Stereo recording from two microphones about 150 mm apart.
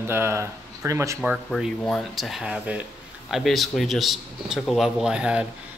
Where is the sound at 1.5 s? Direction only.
Centre (ahead or behind).